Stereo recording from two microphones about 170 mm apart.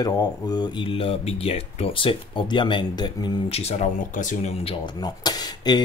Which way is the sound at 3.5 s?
35° left (ahead or behind).